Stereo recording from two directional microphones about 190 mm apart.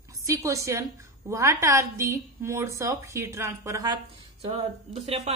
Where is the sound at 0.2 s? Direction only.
15° right (ahead or behind).